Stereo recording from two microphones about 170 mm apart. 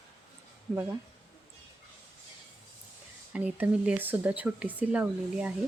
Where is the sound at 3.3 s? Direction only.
10° right (ahead or behind).